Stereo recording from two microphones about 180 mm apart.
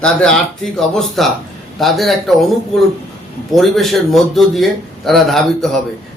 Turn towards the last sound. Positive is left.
turn(degrees=0)  # may be behind; listen again after turning